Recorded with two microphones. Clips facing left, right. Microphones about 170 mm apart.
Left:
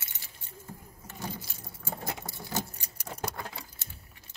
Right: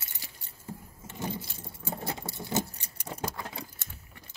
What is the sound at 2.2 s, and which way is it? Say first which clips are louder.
Rodents: right 4 dB; 25° right (ahead or behind).